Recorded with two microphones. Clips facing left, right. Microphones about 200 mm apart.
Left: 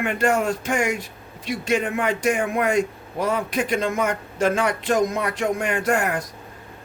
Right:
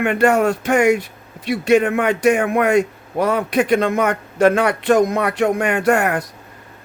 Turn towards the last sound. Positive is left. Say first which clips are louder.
# right 5 dB
turn(degrees=-65)  # may be behind; listen again after turning